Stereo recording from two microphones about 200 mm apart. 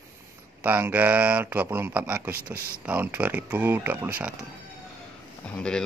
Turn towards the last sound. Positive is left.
turn(degrees=5)  # may be behind; listen again after turning